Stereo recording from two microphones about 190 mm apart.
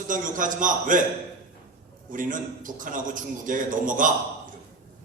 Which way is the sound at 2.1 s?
45° right (ahead or behind).